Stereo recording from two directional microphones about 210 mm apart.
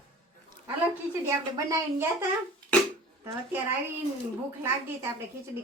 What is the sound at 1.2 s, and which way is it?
Speech, 15° right (ahead or behind).